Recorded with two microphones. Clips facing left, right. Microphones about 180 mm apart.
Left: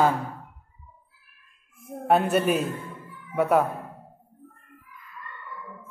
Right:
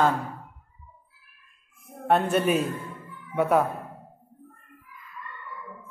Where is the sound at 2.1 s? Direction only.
5° left (ahead or behind).